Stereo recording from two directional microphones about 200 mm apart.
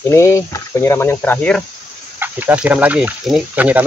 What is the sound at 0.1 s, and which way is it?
Speech, 15° left (ahead or behind).